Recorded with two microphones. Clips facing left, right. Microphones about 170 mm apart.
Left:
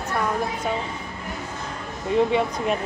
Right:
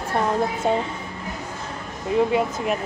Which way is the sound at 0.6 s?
30° right (ahead or behind).